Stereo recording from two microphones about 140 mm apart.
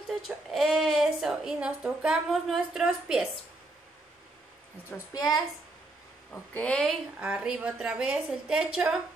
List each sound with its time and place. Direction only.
0.1 s a woman's voice: centre (ahead or behind)
4.9 s a woman's voice: 25° left (ahead or behind)
6.5 s a woman's voice: 10° left (ahead or behind)
7.2 s a woman's voice: 5° right (ahead or behind)